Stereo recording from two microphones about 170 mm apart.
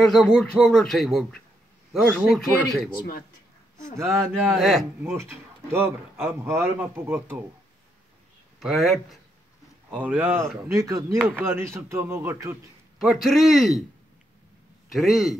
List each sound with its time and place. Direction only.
0.0 s speech: centre (ahead or behind)
4.0 s a man's voice: 15° right (ahead or behind)
4.6 s speech: centre (ahead or behind)
5.0 s a man's voice: 15° right (ahead or behind)
8.5 s a man's voice: centre (ahead or behind)
13.0 s speech: centre (ahead or behind)
14.9 s speech: centre (ahead or behind)